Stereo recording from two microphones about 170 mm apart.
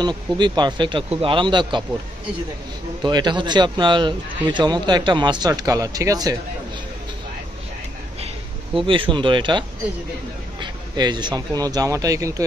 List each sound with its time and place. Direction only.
0.0 s speech: 25° right (ahead or behind)
3.0 s speech: 25° right (ahead or behind)
8.7 s speech: 30° right (ahead or behind)